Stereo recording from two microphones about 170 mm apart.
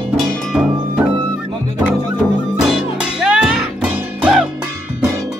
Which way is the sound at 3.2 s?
5° right (ahead or behind).